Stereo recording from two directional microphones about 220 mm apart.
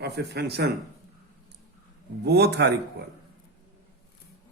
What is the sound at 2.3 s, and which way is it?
Speech, 50° right (ahead or behind).